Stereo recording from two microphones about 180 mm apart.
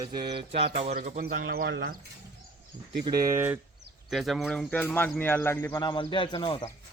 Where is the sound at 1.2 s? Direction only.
55° right (ahead or behind).